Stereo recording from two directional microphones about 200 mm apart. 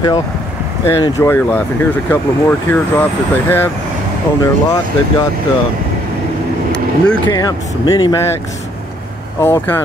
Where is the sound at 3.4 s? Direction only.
10° left (ahead or behind).